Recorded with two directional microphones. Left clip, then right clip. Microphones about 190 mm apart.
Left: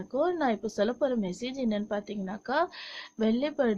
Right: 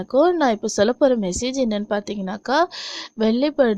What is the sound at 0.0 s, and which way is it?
Speech, 50° right (ahead or behind).